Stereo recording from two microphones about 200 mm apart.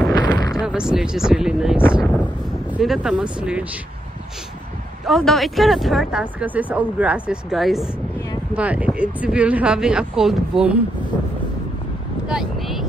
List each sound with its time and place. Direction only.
0.1 s a sound: 20° left (ahead or behind)
0.7 s speech: 5° right (ahead or behind)
5.0 s speech: centre (ahead or behind)
12.3 s vehicle: centre (ahead or behind)